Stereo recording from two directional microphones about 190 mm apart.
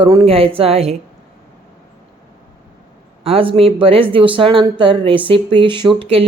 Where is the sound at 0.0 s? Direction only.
20° right (ahead or behind).